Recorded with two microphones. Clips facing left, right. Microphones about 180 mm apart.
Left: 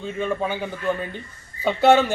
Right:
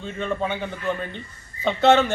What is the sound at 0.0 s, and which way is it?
A man's voice, 10° left (ahead or behind).